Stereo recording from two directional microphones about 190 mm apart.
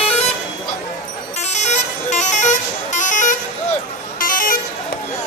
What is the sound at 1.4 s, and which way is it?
Vehicle, 35° left (ahead or behind).